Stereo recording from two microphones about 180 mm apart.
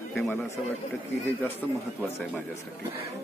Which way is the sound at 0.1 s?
5° left (ahead or behind).